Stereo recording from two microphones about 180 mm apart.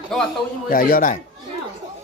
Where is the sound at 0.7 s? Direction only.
50° left (ahead or behind).